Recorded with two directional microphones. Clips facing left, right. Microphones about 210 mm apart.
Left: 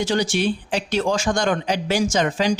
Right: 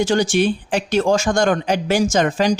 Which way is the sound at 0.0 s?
45° right (ahead or behind).